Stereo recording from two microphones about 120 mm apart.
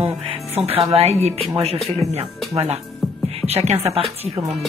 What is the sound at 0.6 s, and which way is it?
Music, 55° right (ahead or behind).